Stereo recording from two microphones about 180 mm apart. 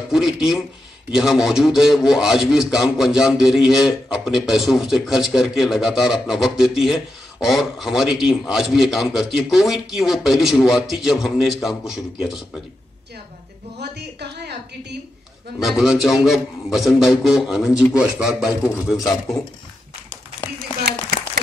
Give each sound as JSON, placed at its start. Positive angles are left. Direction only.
{"t": 0.1, "sound": "a man's voice", "side_deg": 0}
{"t": 13.7, "sound": "a sound", "side_deg": -65}
{"t": 15.6, "sound": "a man's voice", "side_deg": 0}